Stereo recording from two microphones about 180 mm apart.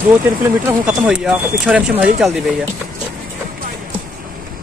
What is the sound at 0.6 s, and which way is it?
Speech, 5° right (ahead or behind).